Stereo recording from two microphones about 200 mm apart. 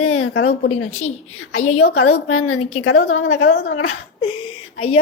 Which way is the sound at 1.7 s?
90° left.